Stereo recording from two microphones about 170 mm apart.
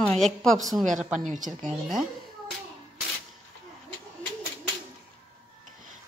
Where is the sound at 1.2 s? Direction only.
50° right (ahead or behind).